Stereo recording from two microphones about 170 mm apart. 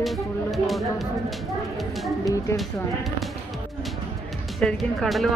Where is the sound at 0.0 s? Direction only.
Centre (ahead or behind).